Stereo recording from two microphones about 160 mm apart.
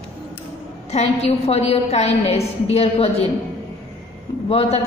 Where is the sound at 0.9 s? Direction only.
40° left (ahead or behind).